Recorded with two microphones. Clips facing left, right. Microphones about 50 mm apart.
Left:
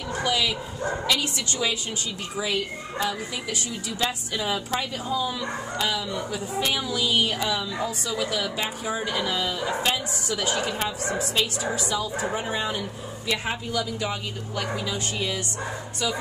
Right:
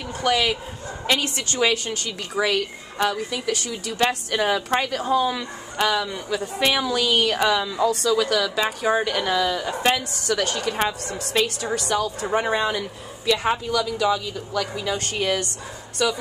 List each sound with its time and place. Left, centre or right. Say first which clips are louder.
0.2 s a woman's voice: right 5 dB; right
8.9 s a woman's voice: right 5 dB; right
12.4 s a woman's voice: right 6 dB; right
14.9 s a woman's voice: right 5 dB; right
16.0 s speech: right 6 dB; right